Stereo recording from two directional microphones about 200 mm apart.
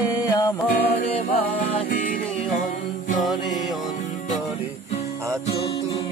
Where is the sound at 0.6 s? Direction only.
45° left (ahead or behind).